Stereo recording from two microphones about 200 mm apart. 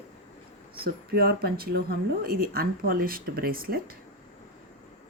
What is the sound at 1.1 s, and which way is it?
Speech, 50° right (ahead or behind).